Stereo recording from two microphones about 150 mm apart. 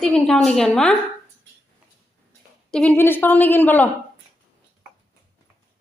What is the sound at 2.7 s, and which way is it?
A woman's voice, 5° left (ahead or behind).